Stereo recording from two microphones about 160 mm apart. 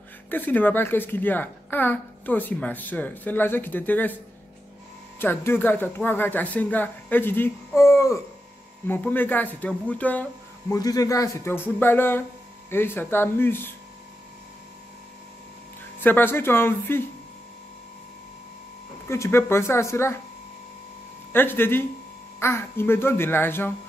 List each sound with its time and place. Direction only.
0.3 s a woman's voice: 10° left (ahead or behind)
5.2 s a woman's voice: 15° left (ahead or behind)
10.7 s a woman's voice: 20° left (ahead or behind)
16.0 s a woman's voice: 10° left (ahead or behind)
19.0 s a woman's voice: 15° left (ahead or behind)
21.3 s a woman's voice: 15° left (ahead or behind)